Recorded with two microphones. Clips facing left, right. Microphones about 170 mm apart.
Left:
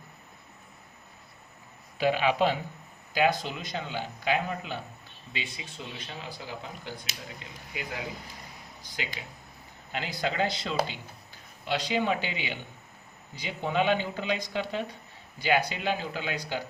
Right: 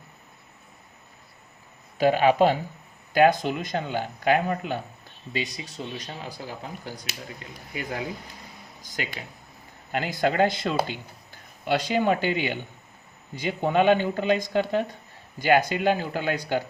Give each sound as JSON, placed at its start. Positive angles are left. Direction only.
{"t": 2.0, "sound": "speech", "side_deg": -45}
{"t": 5.3, "sound": "speech", "side_deg": -40}
{"t": 8.8, "sound": "speech", "side_deg": -45}